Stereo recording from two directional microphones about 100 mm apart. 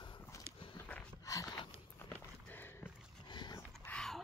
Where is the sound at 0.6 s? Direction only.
65° left (ahead or behind).